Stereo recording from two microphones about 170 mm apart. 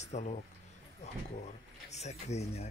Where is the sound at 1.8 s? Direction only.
40° left (ahead or behind).